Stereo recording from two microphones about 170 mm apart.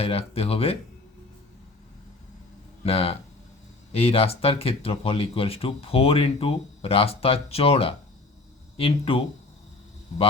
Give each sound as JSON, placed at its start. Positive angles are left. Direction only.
{"t": 0.0, "sound": "speech", "side_deg": 35}
{"t": 2.8, "sound": "speech", "side_deg": 35}